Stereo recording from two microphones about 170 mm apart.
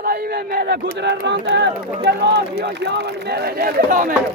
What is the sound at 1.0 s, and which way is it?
Speech, 90° right.